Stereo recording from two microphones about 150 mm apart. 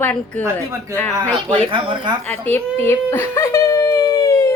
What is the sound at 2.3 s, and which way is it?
Whimper, 15° left (ahead or behind).